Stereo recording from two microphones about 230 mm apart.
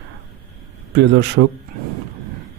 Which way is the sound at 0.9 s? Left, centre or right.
Right.